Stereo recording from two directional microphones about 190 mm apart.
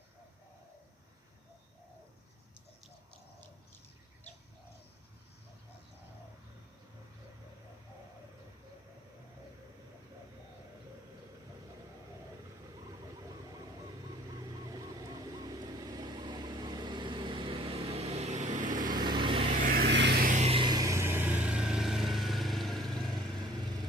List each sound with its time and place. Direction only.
14.7 s vehicle: 20° right (ahead or behind); by 19.0 s 45° right (ahead or behind)
19.0 s vehicle: 25° right (ahead or behind)
19.6 s vehicle: 55° right (ahead or behind)
20.3 s vehicle: 30° right (ahead or behind); by 23.0 s centre (ahead or behind)